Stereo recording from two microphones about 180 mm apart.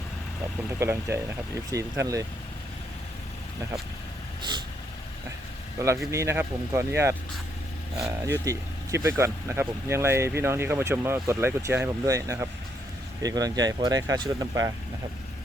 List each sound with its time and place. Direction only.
0.8 s speech: 15° right (ahead or behind)
6.1 s speech: 15° right (ahead or behind)